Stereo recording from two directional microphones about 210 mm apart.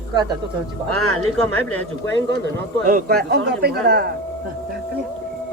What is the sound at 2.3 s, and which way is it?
A man's voice, 45° right (ahead or behind).